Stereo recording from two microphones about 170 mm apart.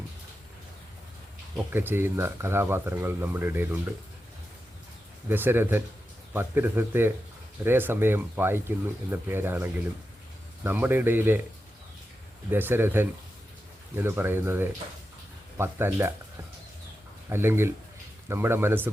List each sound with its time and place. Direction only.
1.7 s speech: 10° right (ahead or behind)
5.3 s speech: 10° right (ahead or behind)
12.5 s speech: 10° right (ahead or behind)
17.2 s speech: 15° right (ahead or behind)